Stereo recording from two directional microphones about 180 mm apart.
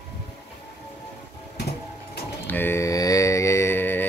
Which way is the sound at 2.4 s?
10° left (ahead or behind).